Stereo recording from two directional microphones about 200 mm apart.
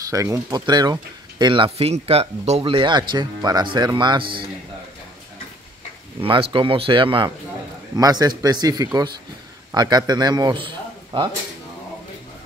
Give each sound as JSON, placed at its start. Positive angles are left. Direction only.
{"t": 0.1, "sound": "speech", "side_deg": -15}
{"t": 6.2, "sound": "a man's voice", "side_deg": -25}